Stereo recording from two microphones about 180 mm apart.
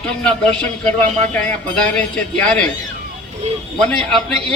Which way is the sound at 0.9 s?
40° right (ahead or behind).